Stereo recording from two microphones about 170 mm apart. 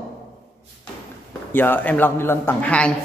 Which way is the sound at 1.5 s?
10° left (ahead or behind).